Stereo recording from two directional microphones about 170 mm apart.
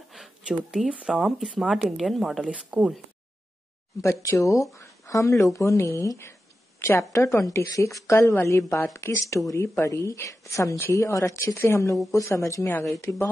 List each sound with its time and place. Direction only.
0.1 s speech: 5° right (ahead or behind)
4.0 s a woman's voice: 20° left (ahead or behind)